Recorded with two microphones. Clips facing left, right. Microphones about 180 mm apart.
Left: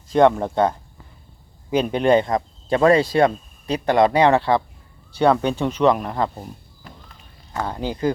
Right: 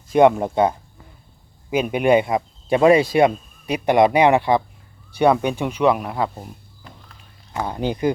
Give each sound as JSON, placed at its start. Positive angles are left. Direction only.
{"t": 0.1, "sound": "speech", "side_deg": -15}
{"t": 7.5, "sound": "speech", "side_deg": -15}